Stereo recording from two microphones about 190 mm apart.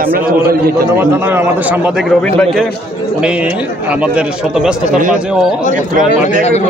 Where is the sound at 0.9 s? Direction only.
10° right (ahead or behind); by 2.7 s 5° left (ahead or behind).